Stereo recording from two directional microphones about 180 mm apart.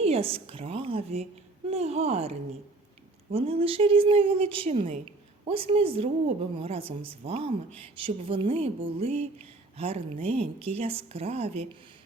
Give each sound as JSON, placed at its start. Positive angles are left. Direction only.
{"t": 0.0, "sound": "a woman's voice", "side_deg": -35}